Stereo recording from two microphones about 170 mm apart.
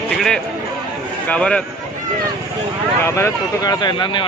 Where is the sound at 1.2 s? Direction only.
5° left (ahead or behind).